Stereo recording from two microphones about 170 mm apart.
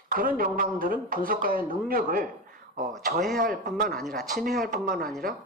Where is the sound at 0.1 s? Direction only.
55° right (ahead or behind).